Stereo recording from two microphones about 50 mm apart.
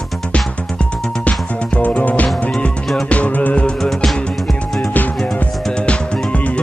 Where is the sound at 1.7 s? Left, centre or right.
Left.